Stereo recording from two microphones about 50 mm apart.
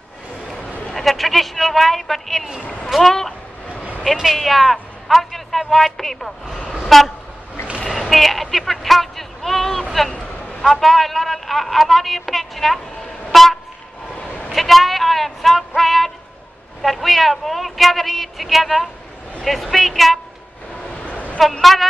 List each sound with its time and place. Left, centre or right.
0.9 s a woman's voice: centre
7.8 s vehicle: centre
9.9 s a woman's voice: centre
13.3 s vehicle: centre
14.5 s music: centre
16.8 s a woman's voice: centre
20.9 s a sound: left
21.4 s a woman's voice: centre